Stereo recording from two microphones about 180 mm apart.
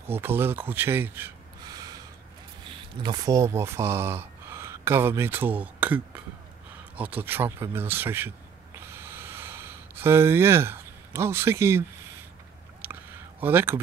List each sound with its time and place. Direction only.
0.2 s speech: 10° right (ahead or behind)
1.7 s gasp: 20° right (ahead or behind)
3.0 s speech: 20° right (ahead or behind)
8.7 s a sound: 15° right (ahead or behind)
12.8 s a sound: 10° right (ahead or behind)
13.4 s speech: 10° right (ahead or behind)